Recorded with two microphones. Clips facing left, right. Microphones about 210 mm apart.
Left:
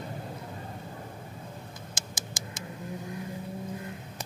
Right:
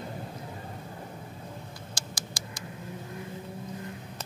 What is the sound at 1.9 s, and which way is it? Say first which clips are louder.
Patter: right 1 dB; 20° left (ahead or behind).